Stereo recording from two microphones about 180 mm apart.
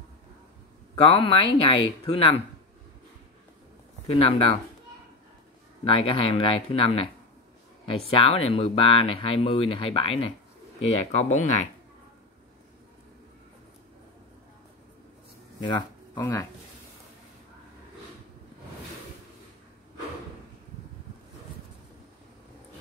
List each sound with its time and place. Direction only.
1.0 s speech: 30° left (ahead or behind)
4.1 s speech: 30° left (ahead or behind)
5.9 s speech: 30° left (ahead or behind)
16.2 s speech: 15° left (ahead or behind)